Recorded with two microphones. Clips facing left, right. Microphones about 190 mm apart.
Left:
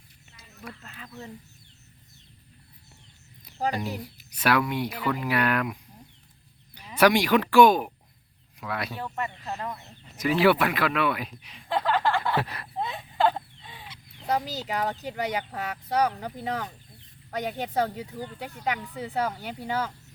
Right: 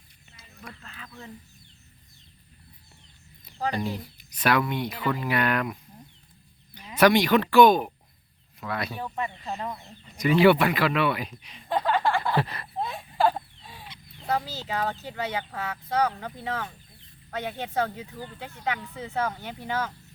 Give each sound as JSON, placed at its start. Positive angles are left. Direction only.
{"t": 0.8, "sound": "speech", "side_deg": 25}
{"t": 3.4, "sound": "speech", "side_deg": 10}
{"t": 7.0, "sound": "speech", "side_deg": 10}
{"t": 8.9, "sound": "speech", "side_deg": -10}
{"t": 10.2, "sound": "speech", "side_deg": 0}
{"t": 11.9, "sound": "a sound", "side_deg": -15}
{"t": 12.4, "sound": "speech", "side_deg": 0}
{"t": 12.8, "sound": "a sound", "side_deg": -10}
{"t": 13.8, "sound": "speech", "side_deg": 10}